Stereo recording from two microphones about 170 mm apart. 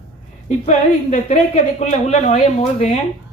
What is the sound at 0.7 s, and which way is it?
A woman's voice, 45° left (ahead or behind).